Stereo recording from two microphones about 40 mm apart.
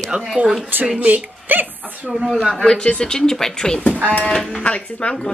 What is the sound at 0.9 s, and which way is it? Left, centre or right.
Speech, right.